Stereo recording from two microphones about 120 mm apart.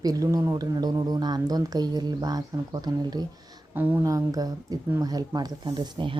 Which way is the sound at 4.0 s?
30° right (ahead or behind).